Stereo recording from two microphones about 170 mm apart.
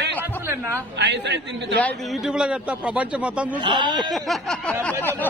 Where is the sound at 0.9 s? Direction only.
90° right.